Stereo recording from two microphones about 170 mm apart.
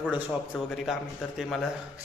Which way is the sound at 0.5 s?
Centre (ahead or behind).